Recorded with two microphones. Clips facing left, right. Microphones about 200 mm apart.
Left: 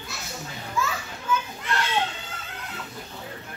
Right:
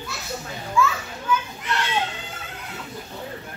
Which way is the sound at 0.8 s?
35° left (ahead or behind).